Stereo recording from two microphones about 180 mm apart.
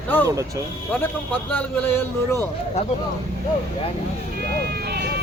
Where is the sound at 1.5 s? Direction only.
10° left (ahead or behind).